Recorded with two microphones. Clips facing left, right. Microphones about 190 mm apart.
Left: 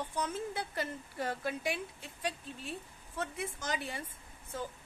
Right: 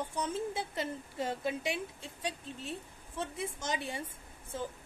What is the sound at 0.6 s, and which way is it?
A woman's voice, 20° right (ahead or behind).